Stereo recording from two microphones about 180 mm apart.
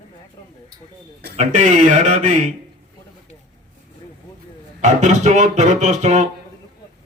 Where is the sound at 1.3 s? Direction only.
40° right (ahead or behind).